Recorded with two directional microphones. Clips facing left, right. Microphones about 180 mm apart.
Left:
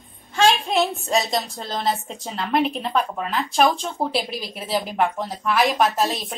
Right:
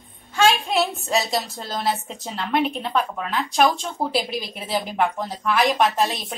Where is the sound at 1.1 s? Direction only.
Centre (ahead or behind).